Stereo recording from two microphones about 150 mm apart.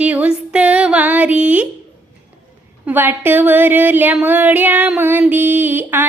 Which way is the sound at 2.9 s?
15° right (ahead or behind).